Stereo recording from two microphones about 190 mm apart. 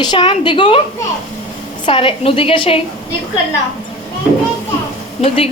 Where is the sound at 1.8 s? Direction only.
30° left (ahead or behind).